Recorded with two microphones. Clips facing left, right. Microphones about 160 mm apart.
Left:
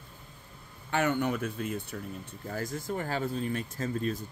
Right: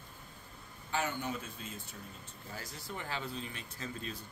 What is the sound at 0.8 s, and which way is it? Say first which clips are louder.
Speech: left 8 dB; 65° left (ahead or behind).